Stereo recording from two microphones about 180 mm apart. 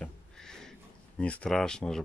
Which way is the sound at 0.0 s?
5° left (ahead or behind).